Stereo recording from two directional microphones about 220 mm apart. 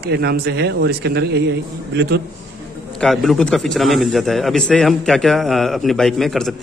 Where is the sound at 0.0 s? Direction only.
45° right (ahead or behind).